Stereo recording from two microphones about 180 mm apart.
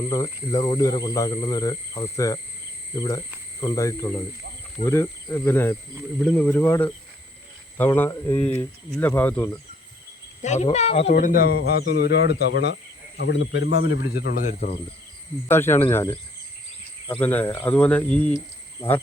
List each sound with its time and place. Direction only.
0.5 s speech: 25° left (ahead or behind); by 9.5 s 10° left (ahead or behind)
10.4 s speech: 40° left (ahead or behind); by 12.7 s 70° left (ahead or behind)
13.1 s speech: 85° left
14.2 s speech: 65° left (ahead or behind)
14.4 s speech: 40° left (ahead or behind)
15.4 s speech: 15° left (ahead or behind)
17.1 s speech: 10° left (ahead or behind)